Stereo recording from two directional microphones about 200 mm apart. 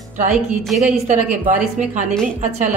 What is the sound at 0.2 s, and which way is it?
Speech, 35° right (ahead or behind).